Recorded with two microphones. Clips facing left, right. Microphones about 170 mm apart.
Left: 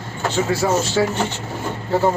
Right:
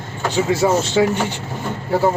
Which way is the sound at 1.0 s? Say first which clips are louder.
Right 4 dB; 15° right (ahead or behind).